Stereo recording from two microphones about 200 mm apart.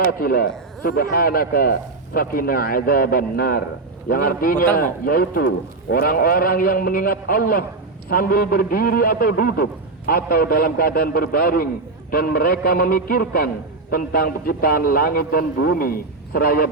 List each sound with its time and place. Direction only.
0.0 s a man's voice: 50° left (ahead or behind)